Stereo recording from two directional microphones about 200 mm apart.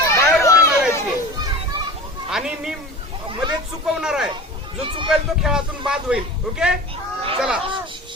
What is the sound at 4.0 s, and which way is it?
Speech, 5° right (ahead or behind).